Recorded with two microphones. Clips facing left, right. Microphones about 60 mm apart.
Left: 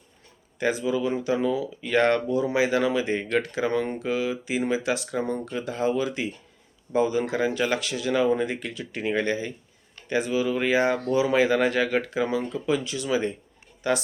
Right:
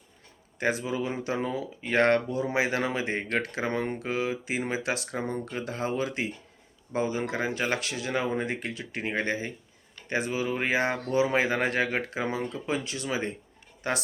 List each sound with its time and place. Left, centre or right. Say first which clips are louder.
0.6 s speech: left 4 dB; right
5.1 s speech: left 4 dB; right
5.5 s speech: left 5 dB; right
6.9 s speech: left 5 dB; right